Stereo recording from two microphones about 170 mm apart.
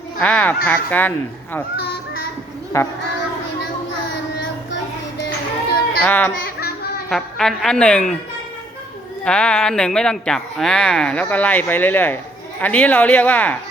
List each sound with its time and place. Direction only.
0.2 s speech: 5° left (ahead or behind)
2.7 s speech: 15° left (ahead or behind)
4.7 s child singing: 85° left
6.1 s speech: 10° left (ahead or behind)
6.4 s a sound: 65° left (ahead or behind)
7.1 s a man's voice: centre (ahead or behind)
9.2 s a man's voice: 5° left (ahead or behind)